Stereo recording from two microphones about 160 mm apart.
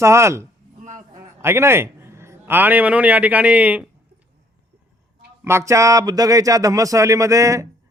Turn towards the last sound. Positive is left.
turn(degrees=-20)  # may be behind; listen again after turning